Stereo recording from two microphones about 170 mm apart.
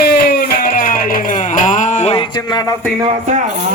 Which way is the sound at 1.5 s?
50° left (ahead or behind).